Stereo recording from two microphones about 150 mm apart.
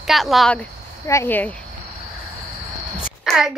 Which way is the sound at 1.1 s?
15° left (ahead or behind).